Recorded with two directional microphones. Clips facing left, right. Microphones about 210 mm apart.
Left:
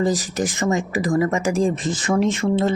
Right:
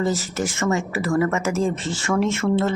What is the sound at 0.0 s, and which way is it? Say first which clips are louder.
Speech: left 2 dB; 15° left (ahead or behind).